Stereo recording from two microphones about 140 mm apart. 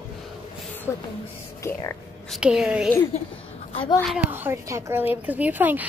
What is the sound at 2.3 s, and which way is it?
Speech, 5° right (ahead or behind).